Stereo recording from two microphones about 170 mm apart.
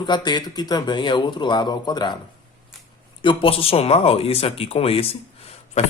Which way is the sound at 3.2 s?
30° left (ahead or behind).